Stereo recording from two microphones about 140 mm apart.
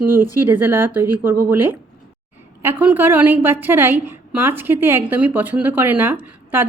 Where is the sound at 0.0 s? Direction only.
15° right (ahead or behind).